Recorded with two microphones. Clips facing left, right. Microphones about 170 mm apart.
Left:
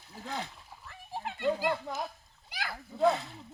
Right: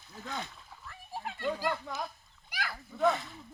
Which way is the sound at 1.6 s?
25° left (ahead or behind).